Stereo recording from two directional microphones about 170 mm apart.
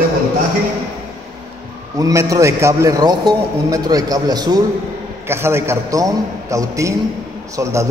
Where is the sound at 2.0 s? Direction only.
20° right (ahead or behind).